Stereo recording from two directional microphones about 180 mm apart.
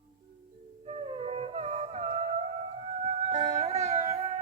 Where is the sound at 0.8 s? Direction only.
35° right (ahead or behind).